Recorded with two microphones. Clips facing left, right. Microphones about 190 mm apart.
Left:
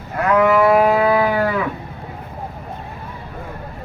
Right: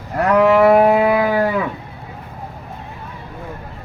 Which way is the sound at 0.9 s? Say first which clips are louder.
Right 1 dB; 15° right (ahead or behind).